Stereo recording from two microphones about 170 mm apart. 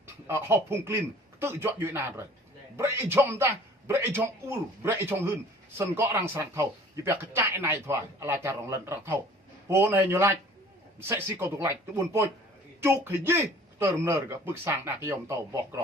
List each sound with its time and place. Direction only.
0.3 s a man's voice: 15° right (ahead or behind)